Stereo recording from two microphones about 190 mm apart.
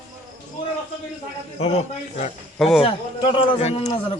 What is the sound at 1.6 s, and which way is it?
Speech, 35° left (ahead or behind).